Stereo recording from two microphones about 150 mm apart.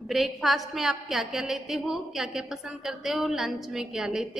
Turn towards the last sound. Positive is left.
turn(degrees=-5)  # may be behind; listen again after turning